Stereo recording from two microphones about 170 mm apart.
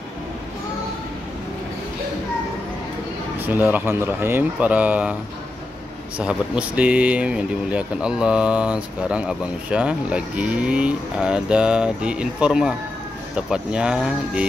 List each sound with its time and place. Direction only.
3.3 s speech: 10° right (ahead or behind)
6.1 s speech: 5° right (ahead or behind)